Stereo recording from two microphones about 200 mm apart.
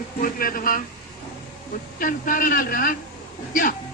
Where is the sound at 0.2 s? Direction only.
45° left (ahead or behind).